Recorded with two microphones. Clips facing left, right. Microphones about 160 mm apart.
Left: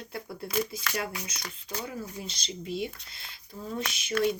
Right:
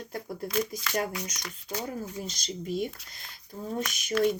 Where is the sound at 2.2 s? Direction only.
45° right (ahead or behind).